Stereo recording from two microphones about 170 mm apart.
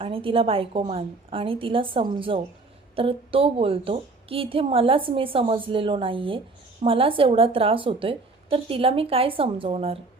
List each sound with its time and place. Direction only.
0.0 s a woman's voice: 30° right (ahead or behind)